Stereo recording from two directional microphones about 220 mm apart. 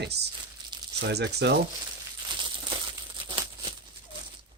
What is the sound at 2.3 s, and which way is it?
Crumpling, 20° right (ahead or behind).